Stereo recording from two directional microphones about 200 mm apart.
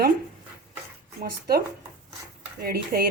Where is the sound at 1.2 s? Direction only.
50° right (ahead or behind).